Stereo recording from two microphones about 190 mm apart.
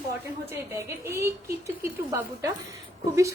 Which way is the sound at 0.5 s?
15° right (ahead or behind).